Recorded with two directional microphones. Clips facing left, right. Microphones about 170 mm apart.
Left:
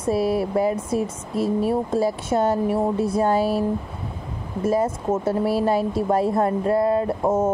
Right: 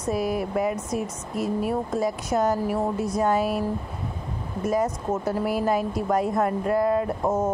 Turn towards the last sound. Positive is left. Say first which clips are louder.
# left 3 dB
turn(degrees=25)  # may be behind; listen again after turning